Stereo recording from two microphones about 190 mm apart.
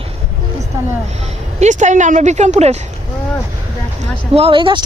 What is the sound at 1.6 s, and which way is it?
Speech, 40° right (ahead or behind).